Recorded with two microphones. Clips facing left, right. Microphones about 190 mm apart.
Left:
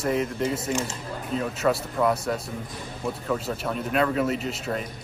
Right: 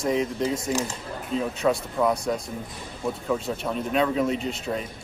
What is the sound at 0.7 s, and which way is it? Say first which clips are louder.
Speech: right 1 dB; 35° right (ahead or behind).